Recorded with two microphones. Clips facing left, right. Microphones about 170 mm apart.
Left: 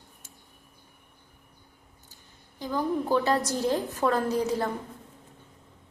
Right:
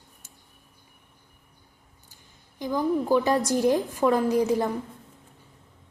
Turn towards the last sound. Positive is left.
turn(degrees=-15)  # may be behind; listen again after turning